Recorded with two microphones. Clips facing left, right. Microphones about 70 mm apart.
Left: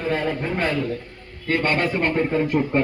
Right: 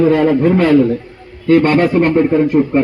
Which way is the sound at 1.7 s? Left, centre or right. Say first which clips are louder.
Right 10 dB; right.